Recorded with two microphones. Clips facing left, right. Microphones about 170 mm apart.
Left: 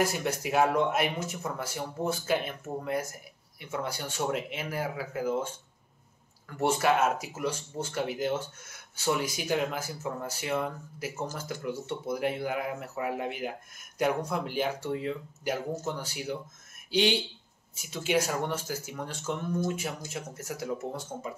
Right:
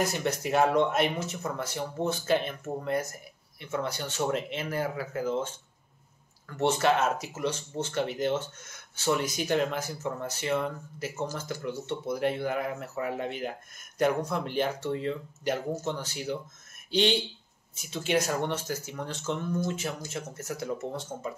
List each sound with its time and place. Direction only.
0.0 s speech: 10° left (ahead or behind)
6.5 s speech: 10° left (ahead or behind)